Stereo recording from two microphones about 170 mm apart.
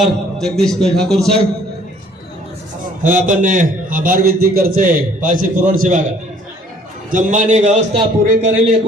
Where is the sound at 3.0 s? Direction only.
50° right (ahead or behind).